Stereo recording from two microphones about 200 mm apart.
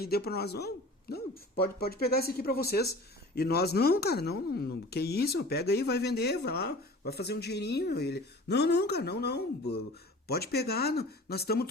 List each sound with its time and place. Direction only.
0.0 s speech: 50° left (ahead or behind)